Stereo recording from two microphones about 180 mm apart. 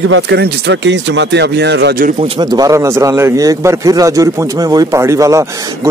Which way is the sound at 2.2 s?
25° right (ahead or behind).